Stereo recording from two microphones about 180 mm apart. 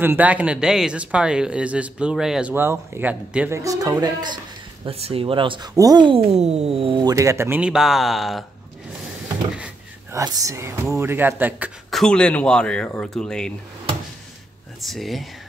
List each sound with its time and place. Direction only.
0.0 s speech: 10° right (ahead or behind)
10.1 s speech: 20° right (ahead or behind)
11.9 s speech: 5° left (ahead or behind)
14.9 s speech: centre (ahead or behind)